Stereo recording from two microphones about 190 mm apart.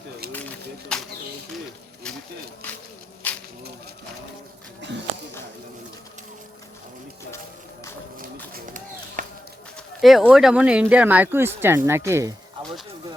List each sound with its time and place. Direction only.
0.9 s speech: 5° left (ahead or behind)
2.0 s a sound: 5° left (ahead or behind)
3.2 s a sound: 10° left (ahead or behind)
4.8 s speech: 70° right (ahead or behind)
8.5 s run: 45° right (ahead or behind)
10.0 s speech: centre (ahead or behind)